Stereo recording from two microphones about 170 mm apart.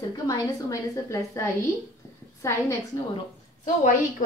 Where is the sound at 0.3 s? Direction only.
20° left (ahead or behind).